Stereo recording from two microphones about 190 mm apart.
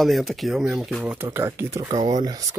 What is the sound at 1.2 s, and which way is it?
Speech, 15° right (ahead or behind).